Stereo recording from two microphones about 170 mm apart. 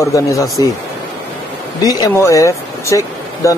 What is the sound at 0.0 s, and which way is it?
Speech, 20° left (ahead or behind).